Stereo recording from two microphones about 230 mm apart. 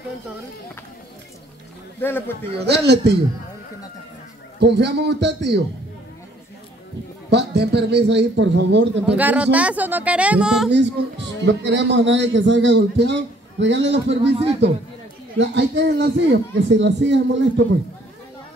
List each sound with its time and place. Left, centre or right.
2.0 s a man's voice: centre
2.6 s a man's voice: right
4.6 s a man's voice: right
7.2 s a man's voice: right
9.0 s speech: centre
11.4 s a man's voice: right